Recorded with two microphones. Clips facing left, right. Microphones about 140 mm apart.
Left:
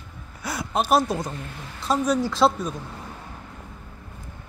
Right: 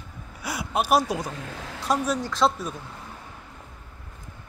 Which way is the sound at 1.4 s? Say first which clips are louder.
Right 1 dB; 90° right.